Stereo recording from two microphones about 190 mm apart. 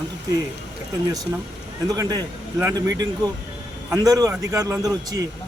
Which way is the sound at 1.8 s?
20° right (ahead or behind).